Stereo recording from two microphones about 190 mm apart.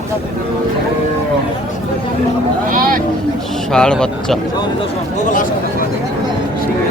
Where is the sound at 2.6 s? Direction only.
45° right (ahead or behind).